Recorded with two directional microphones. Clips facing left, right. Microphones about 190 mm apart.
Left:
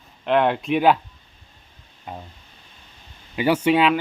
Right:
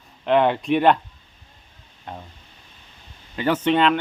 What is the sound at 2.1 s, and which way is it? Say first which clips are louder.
Speech: left 1 dB; 5° left (ahead or behind).